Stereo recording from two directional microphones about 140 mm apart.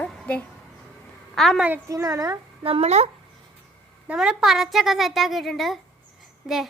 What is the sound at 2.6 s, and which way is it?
Speech, 45° right (ahead or behind).